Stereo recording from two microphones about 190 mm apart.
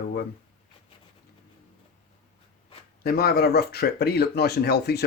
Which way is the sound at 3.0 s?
55° left (ahead or behind).